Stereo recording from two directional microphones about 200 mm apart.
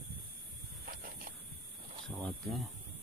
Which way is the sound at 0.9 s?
45° right (ahead or behind).